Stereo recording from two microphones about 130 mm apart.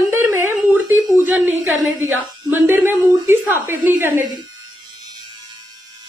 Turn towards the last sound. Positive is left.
turn(degrees=-15)  # may be behind; listen again after turning